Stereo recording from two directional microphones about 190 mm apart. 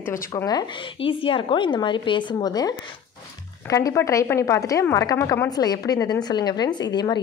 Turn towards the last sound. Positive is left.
turn(degrees=20)  # may be behind; listen again after turning